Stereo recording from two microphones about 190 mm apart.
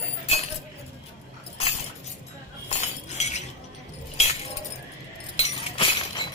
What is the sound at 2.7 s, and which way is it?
Chink, 35° left (ahead or behind).